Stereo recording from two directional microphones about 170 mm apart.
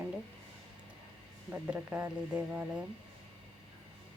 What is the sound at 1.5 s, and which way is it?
Speech, 10° right (ahead or behind).